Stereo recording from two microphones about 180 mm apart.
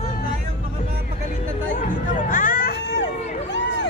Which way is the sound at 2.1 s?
50° left (ahead or behind).